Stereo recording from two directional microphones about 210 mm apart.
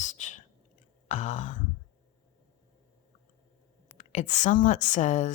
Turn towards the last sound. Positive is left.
turn(degrees=35)  # may be behind; listen again after turning